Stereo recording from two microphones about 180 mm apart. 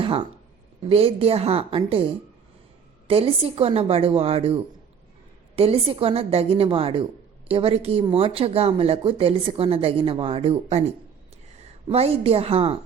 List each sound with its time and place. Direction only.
0.0 s a woman's voice: 30° right (ahead or behind)
3.1 s a woman's voice: 30° right (ahead or behind)